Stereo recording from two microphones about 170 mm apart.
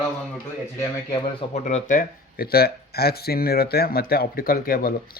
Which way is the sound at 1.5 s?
40° left (ahead or behind).